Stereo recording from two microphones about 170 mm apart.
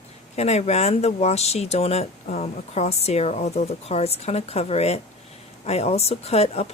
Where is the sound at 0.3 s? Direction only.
40° left (ahead or behind).